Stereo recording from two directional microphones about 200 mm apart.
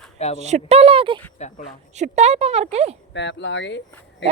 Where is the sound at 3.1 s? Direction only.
60° left (ahead or behind).